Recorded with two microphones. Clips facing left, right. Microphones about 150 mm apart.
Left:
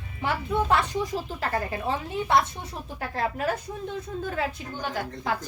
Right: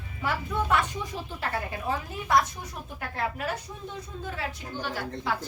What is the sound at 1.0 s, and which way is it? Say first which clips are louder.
Speech: left 5 dB; 40° left (ahead or behind).